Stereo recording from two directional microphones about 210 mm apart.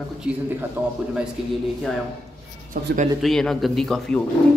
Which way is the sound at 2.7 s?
40° right (ahead or behind).